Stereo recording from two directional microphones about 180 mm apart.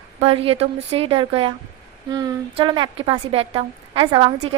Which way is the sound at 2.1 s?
20° right (ahead or behind).